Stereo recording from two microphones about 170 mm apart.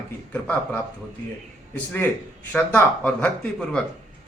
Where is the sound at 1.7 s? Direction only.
10° left (ahead or behind).